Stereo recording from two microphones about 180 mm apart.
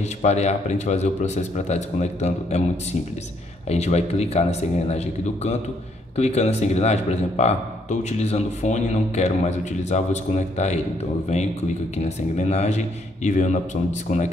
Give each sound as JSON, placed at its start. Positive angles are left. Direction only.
{"t": 0.2, "sound": "speech", "side_deg": 40}
{"t": 12.0, "sound": "speech", "side_deg": 40}